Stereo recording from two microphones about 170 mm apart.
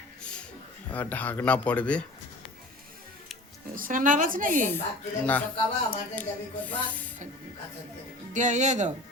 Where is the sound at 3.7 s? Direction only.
50° right (ahead or behind).